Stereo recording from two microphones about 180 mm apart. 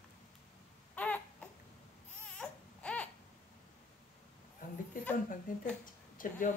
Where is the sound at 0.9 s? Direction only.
10° left (ahead or behind).